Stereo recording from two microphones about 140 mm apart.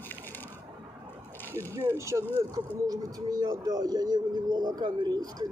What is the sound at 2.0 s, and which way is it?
A man's voice, 20° right (ahead or behind).